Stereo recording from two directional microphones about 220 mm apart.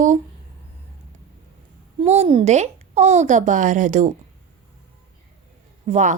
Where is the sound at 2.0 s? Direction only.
30° right (ahead or behind).